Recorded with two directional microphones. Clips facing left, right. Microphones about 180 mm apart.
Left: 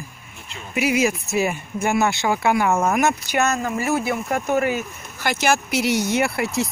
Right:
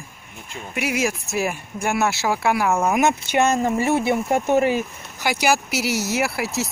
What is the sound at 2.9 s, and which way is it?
Speech, 20° right (ahead or behind).